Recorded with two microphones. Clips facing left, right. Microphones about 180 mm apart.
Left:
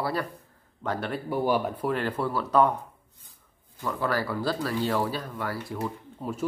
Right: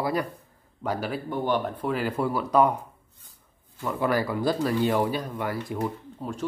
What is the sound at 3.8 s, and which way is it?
Speech, 15° right (ahead or behind).